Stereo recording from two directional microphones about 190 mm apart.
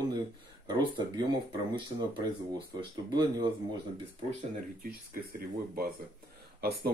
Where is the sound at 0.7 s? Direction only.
20° right (ahead or behind).